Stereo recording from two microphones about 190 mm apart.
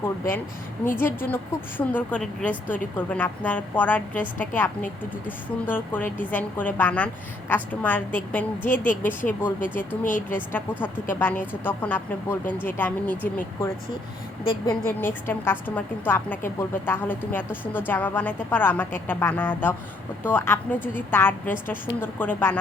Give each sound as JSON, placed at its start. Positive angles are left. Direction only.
{"t": 0.9, "sound": "a woman's voice", "side_deg": 10}
{"t": 10.1, "sound": "speech", "side_deg": 45}
{"t": 10.3, "sound": "a woman's voice", "side_deg": 10}
{"t": 14.8, "sound": "a woman's voice", "side_deg": 10}